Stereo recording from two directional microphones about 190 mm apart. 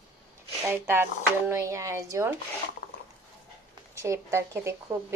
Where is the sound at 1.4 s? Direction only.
15° right (ahead or behind).